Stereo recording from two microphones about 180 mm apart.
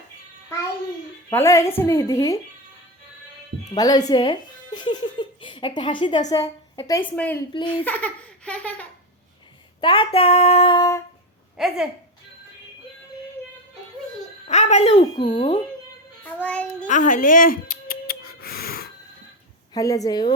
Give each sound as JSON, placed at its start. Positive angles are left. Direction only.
{"t": 1.3, "sound": "laughter", "side_deg": 15}
{"t": 3.8, "sound": "speech", "side_deg": 20}
{"t": 6.3, "sound": "laughter", "side_deg": 20}
{"t": 9.8, "sound": "speech", "side_deg": 30}
{"t": 11.5, "sound": "a woman's voice", "side_deg": 0}
{"t": 14.4, "sound": "speech", "side_deg": 40}
{"t": 16.4, "sound": "laughter", "side_deg": 5}
{"t": 16.9, "sound": "music", "side_deg": 45}
{"t": 19.7, "sound": "speech", "side_deg": 20}